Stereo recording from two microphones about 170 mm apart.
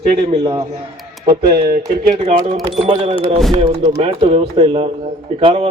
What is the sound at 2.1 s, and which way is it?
Speech, 40° right (ahead or behind).